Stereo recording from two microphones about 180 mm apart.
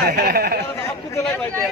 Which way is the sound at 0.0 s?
60° right (ahead or behind).